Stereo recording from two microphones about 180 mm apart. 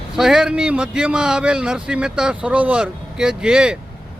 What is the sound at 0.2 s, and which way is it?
Speech, 5° right (ahead or behind).